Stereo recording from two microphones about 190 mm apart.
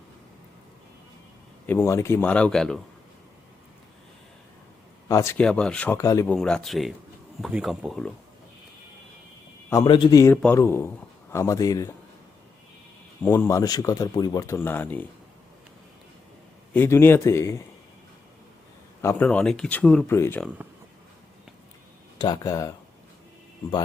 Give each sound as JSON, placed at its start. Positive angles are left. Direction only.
{"t": 1.6, "sound": "speech", "side_deg": 15}
{"t": 5.0, "sound": "speech", "side_deg": 15}
{"t": 6.3, "sound": "speech", "side_deg": 5}
{"t": 9.8, "sound": "speech", "side_deg": 25}
{"t": 13.2, "sound": "speech", "side_deg": 10}
{"t": 16.7, "sound": "speech", "side_deg": 10}
{"t": 19.0, "sound": "speech", "side_deg": 5}
{"t": 20.4, "sound": "speech", "side_deg": -5}
{"t": 22.2, "sound": "speech", "side_deg": 20}